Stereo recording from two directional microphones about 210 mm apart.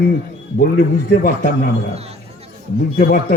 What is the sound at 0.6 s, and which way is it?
A man's voice, 45° left (ahead or behind).